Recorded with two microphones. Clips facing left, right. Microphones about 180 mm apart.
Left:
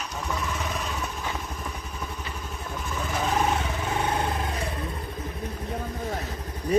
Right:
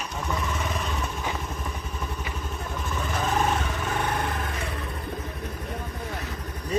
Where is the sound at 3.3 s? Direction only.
20° left (ahead or behind).